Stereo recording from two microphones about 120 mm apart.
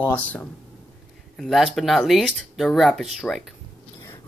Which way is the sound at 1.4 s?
Centre (ahead or behind).